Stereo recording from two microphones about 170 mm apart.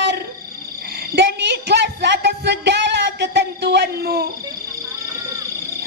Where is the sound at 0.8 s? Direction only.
65° right (ahead or behind).